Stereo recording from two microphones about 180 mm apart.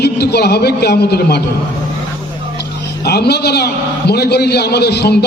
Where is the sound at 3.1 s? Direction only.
65° left (ahead or behind).